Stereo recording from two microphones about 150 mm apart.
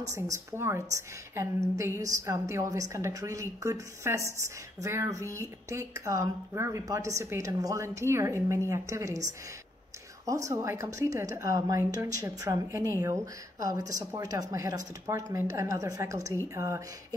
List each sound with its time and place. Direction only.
0.1 s speech: 20° right (ahead or behind)
10.2 s speech: 20° right (ahead or behind)